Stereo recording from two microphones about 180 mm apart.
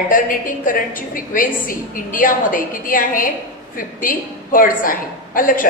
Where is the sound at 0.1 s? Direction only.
50° left (ahead or behind).